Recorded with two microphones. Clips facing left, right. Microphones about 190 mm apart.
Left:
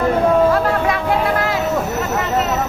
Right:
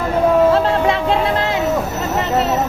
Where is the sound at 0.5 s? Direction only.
25° right (ahead or behind).